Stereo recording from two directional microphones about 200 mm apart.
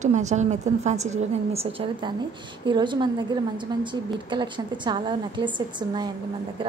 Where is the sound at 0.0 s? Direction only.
35° right (ahead or behind).